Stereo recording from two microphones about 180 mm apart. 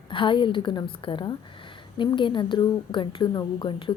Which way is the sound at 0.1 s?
30° left (ahead or behind).